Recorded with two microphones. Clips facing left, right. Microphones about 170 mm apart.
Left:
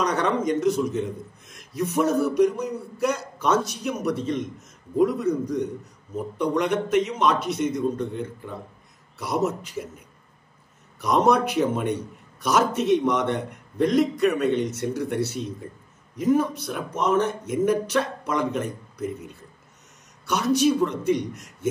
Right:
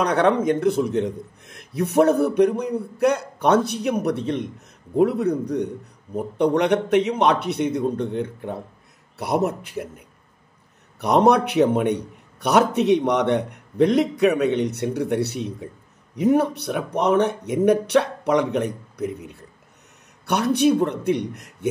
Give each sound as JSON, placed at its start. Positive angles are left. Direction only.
{"t": 0.0, "sound": "a man's voice", "side_deg": -60}
{"t": 11.0, "sound": "a man's voice", "side_deg": -65}